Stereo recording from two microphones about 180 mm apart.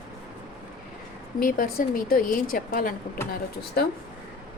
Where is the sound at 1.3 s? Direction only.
50° left (ahead or behind).